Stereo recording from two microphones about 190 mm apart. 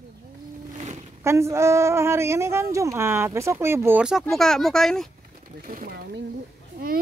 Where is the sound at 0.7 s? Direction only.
35° right (ahead or behind).